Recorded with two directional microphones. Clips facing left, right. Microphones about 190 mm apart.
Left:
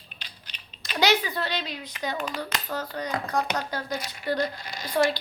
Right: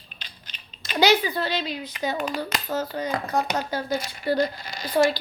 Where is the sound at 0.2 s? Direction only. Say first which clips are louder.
Right 1 dB; centre (ahead or behind).